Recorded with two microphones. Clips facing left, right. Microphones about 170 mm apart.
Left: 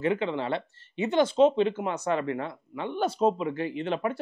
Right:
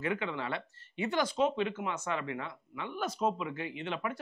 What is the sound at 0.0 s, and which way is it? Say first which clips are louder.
Speech: left 7 dB; 30° left (ahead or behind).